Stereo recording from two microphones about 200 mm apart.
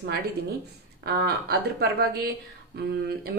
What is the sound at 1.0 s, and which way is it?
Speech, 55° right (ahead or behind).